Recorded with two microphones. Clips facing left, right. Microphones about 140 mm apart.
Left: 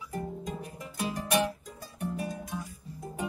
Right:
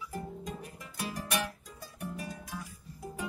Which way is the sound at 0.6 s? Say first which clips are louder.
Left 5 dB; 25° left (ahead or behind).